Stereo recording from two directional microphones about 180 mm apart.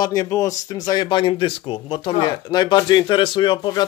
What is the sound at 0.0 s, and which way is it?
Speech, 20° left (ahead or behind).